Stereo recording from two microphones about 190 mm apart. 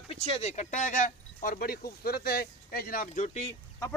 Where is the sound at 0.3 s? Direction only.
35° left (ahead or behind).